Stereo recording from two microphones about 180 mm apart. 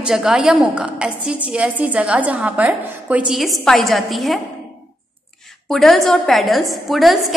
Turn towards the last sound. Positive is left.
turn(degrees=0)  # may be behind; listen again after turning